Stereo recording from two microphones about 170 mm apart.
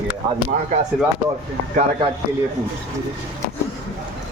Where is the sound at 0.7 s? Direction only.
45° right (ahead or behind).